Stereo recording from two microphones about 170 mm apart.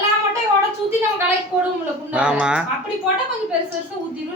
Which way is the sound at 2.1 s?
5° right (ahead or behind).